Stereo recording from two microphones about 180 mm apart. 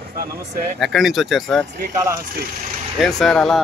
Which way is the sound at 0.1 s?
55° right (ahead or behind).